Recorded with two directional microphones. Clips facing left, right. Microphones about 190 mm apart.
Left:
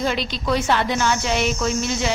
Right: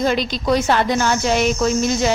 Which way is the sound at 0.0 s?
40° right (ahead or behind).